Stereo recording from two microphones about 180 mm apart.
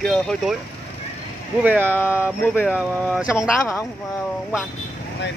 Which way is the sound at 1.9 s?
10° left (ahead or behind).